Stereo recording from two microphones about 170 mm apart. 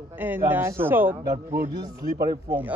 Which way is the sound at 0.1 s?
10° right (ahead or behind).